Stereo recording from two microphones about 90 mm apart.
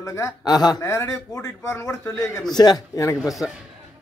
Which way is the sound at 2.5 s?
50° left (ahead or behind).